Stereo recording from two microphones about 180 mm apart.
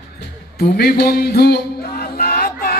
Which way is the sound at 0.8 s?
60° left (ahead or behind).